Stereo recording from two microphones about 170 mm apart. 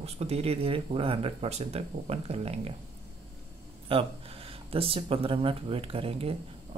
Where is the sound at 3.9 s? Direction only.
35° right (ahead or behind).